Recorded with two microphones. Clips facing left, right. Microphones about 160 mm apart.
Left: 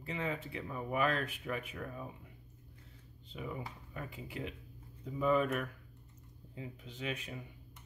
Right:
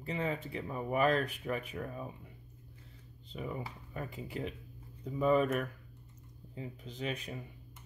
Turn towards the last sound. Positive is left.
turn(degrees=-40)  # may be behind; listen again after turning